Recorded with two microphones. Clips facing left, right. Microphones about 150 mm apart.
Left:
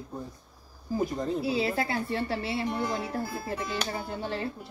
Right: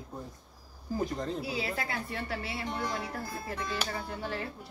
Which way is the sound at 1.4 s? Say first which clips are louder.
Left 7 dB; 30° left (ahead or behind).